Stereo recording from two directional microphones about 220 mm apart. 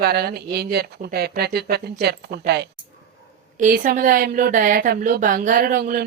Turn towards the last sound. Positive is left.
turn(degrees=-40)  # may be behind; listen again after turning